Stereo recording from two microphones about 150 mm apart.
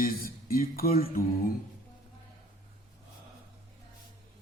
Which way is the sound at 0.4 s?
80° left.